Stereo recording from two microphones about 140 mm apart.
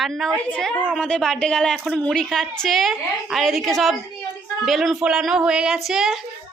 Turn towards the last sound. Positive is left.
turn(degrees=-5)  # may be behind; listen again after turning